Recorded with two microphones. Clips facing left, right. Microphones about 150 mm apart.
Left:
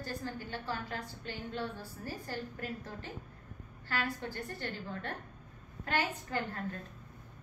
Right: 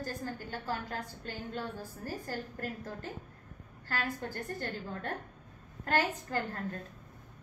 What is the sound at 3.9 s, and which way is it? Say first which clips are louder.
A woman's voice: even; 45° right (ahead or behind).